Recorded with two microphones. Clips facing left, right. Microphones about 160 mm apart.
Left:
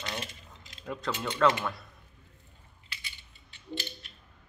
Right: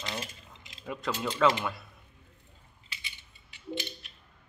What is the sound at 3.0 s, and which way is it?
Coin, 15° right (ahead or behind).